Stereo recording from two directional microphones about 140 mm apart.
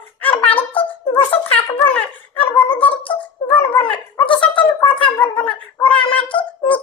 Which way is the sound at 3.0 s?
10° left (ahead or behind).